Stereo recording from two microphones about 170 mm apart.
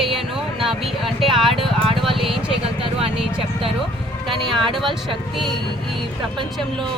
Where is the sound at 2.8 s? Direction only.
35° right (ahead or behind).